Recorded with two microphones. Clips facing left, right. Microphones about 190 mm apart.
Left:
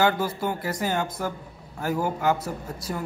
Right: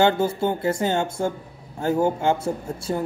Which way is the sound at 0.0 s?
25° right (ahead or behind).